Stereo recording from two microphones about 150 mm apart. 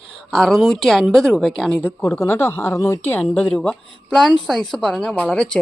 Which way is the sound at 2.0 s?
20° left (ahead or behind).